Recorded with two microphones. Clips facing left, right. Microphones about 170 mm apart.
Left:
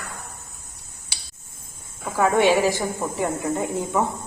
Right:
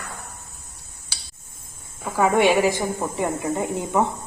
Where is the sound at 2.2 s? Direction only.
15° right (ahead or behind).